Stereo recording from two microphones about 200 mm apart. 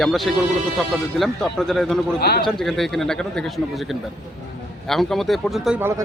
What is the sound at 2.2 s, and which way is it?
Speech, 50° left (ahead or behind).